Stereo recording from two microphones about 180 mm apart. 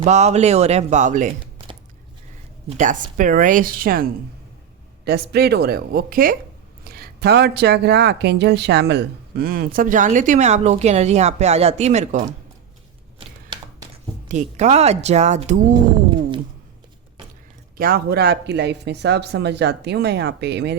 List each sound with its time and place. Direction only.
0.0 s a woman's voice: 40° right (ahead or behind)
2.6 s speech: 45° right (ahead or behind)
13.1 s a sound: 25° right (ahead or behind)
14.3 s a woman's voice: 40° right (ahead or behind)
17.7 s speech: 55° right (ahead or behind)